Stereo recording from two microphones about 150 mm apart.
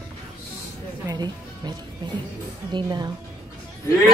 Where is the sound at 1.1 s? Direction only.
25° right (ahead or behind).